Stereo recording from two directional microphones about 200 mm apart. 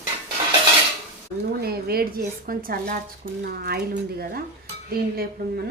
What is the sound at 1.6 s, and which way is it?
A woman's voice, 50° right (ahead or behind).